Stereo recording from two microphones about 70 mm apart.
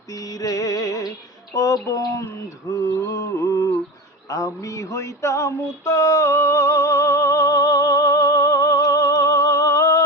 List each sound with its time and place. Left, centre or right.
0.1 s music: left
1.5 s a sound: left
2.7 s mantra: left
4.3 s female singing: left